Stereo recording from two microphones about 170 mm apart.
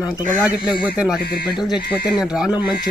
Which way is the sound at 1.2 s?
65° left (ahead or behind).